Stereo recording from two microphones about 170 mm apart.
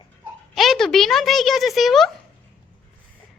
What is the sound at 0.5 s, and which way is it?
A woman's voice, centre (ahead or behind).